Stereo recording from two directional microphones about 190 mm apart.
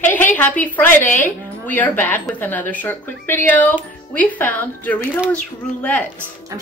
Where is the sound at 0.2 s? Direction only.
10° left (ahead or behind).